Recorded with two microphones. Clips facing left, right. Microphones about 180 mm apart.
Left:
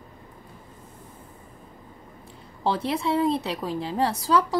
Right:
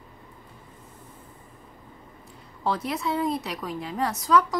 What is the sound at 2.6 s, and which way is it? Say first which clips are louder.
A woman's voice: left 2 dB; 30° left (ahead or behind).